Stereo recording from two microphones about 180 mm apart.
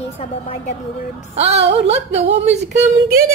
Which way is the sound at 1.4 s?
35° right (ahead or behind).